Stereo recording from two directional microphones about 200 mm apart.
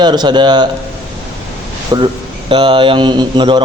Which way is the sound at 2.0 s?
25° right (ahead or behind).